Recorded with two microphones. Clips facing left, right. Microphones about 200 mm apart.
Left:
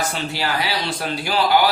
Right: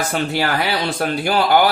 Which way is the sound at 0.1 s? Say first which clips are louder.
Right 5 dB; 55° right (ahead or behind).